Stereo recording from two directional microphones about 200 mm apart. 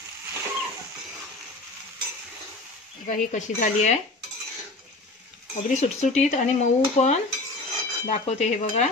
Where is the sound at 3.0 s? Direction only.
40° left (ahead or behind).